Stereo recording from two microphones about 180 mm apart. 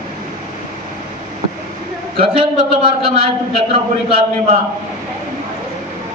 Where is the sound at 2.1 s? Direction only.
30° right (ahead or behind).